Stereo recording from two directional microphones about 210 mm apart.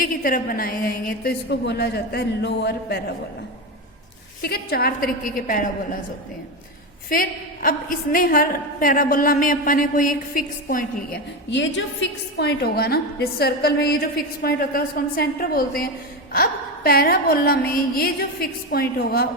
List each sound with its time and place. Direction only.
0.0 s a woman's voice: 40° left (ahead or behind)
4.4 s a woman's voice: 45° left (ahead or behind)
7.1 s a woman's voice: 40° left (ahead or behind)
11.6 s a woman's voice: 60° left (ahead or behind)